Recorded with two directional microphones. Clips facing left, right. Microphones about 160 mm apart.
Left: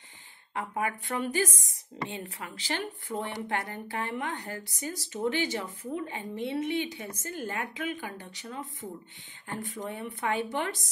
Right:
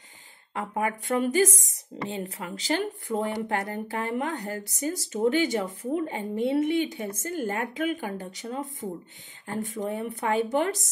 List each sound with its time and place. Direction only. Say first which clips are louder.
0.6 s speech: right 3 dB; 35° right (ahead or behind)